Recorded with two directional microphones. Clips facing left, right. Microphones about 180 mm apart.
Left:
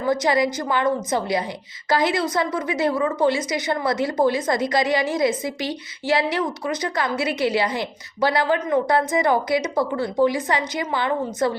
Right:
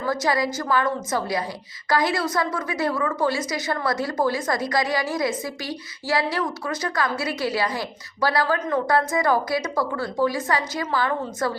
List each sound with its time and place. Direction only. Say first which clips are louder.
0.0 s a woman's voice: left 3 dB; 20° left (ahead or behind)